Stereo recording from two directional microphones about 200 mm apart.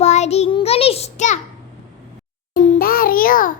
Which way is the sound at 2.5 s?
45° left (ahead or behind).